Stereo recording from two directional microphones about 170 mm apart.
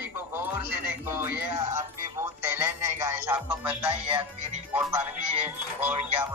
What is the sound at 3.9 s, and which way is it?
Music, 40° right (ahead or behind).